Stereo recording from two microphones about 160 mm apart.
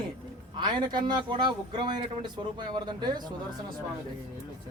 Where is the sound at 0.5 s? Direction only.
30° right (ahead or behind).